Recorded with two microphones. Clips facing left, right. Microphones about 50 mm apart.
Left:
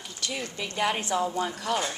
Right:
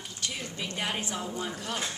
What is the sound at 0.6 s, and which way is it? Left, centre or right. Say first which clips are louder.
Speech: left 5 dB; left.